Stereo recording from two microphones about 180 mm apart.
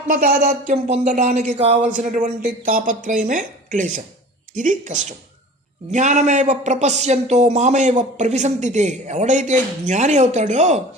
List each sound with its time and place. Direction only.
0.1 s speech: 50° right (ahead or behind); by 1.9 s 30° right (ahead or behind)
2.0 s speech: 45° right (ahead or behind)